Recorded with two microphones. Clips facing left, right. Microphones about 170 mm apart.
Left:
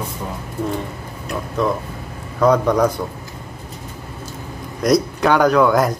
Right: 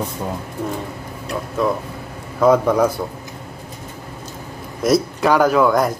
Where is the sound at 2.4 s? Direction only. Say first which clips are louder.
Right 1 dB; 5° right (ahead or behind).